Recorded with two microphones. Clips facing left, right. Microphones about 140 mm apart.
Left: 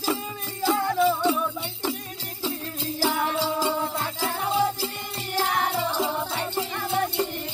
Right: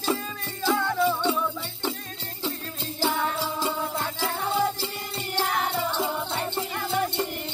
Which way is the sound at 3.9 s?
10° left (ahead or behind).